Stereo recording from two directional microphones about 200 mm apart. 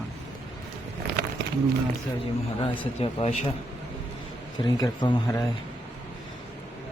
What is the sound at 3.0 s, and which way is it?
Speech, 30° left (ahead or behind).